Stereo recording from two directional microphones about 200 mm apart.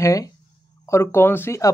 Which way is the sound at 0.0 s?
15° left (ahead or behind).